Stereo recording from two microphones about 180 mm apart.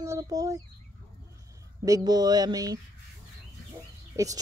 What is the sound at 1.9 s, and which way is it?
Speech, 20° right (ahead or behind).